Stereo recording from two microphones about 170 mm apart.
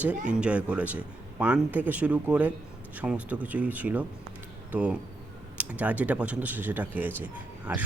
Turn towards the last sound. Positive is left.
turn(degrees=-10)  # may be behind; listen again after turning